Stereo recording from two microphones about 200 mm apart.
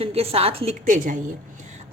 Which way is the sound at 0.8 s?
40° right (ahead or behind).